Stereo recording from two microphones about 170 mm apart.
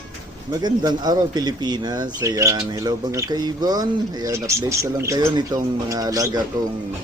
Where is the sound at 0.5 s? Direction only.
25° right (ahead or behind).